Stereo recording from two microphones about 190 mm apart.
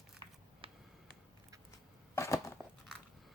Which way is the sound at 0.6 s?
30° right (ahead or behind).